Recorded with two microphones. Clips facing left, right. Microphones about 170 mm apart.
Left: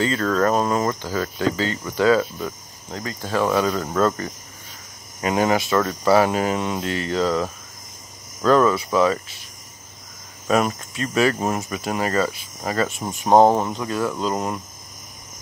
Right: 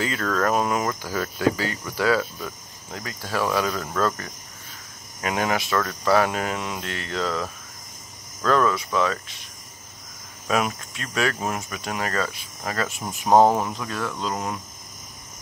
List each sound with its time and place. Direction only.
0.0 s cricket: centre (ahead or behind)
0.6 s speech: 5° right (ahead or behind)
0.8 s speech: 10° left (ahead or behind)
1.4 s speech: 5° right (ahead or behind)
2.0 s cricket: 5° right (ahead or behind)
10.5 s cricket: centre (ahead or behind)
13.3 s speech: 20° left (ahead or behind)
13.6 s cricket: centre (ahead or behind)